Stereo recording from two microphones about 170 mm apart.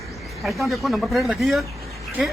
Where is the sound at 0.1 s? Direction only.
Centre (ahead or behind).